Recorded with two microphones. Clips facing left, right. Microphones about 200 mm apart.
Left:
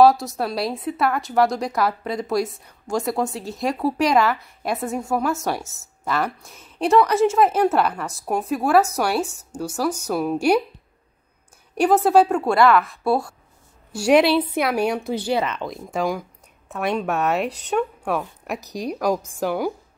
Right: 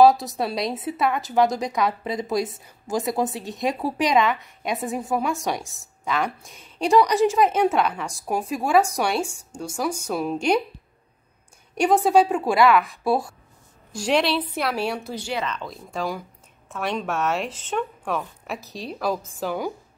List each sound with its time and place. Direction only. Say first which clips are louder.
0.0 s a woman's voice: left 1 dB; centre (ahead or behind)
11.7 s a woman's voice: left 2 dB; 5° left (ahead or behind)
15.1 s speech: left 6 dB; 30° left (ahead or behind)
15.6 s a woman's voice: left 5 dB; 15° left (ahead or behind)